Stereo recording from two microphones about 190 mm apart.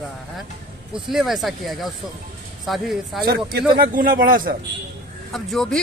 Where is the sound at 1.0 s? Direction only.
Centre (ahead or behind).